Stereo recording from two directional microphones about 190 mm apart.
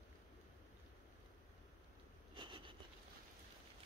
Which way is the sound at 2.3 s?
25° right (ahead or behind).